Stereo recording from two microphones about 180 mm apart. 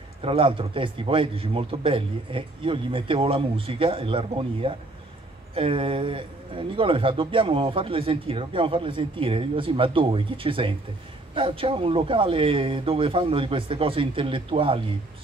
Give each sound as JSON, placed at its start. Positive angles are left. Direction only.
{"t": 0.2, "sound": "a man's voice", "side_deg": -30}